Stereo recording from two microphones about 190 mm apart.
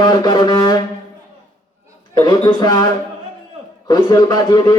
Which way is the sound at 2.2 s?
20° left (ahead or behind).